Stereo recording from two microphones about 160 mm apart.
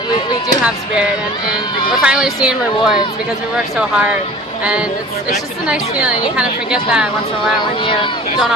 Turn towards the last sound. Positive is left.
turn(degrees=-5)  # may be behind; listen again after turning